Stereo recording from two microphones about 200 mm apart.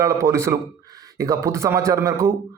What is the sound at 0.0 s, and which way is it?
A man's voice, 15° right (ahead or behind).